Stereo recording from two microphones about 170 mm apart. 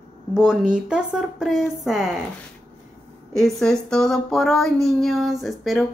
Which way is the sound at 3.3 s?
Centre (ahead or behind).